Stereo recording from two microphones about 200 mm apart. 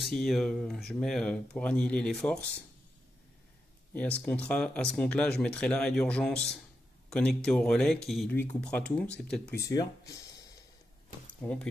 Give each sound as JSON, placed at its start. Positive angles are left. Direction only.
{"t": 0.0, "sound": "speech", "side_deg": 0}
{"t": 3.9, "sound": "speech", "side_deg": 5}
{"t": 9.6, "sound": "speech", "side_deg": 15}
{"t": 11.4, "sound": "speech", "side_deg": 5}